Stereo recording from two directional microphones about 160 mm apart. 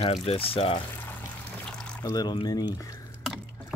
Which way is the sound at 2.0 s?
25° left (ahead or behind).